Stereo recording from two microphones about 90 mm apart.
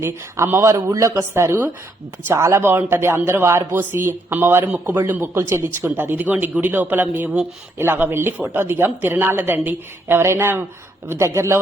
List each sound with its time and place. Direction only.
0.0 s speech: 25° right (ahead or behind)
1.4 s speech: 25° right (ahead or behind)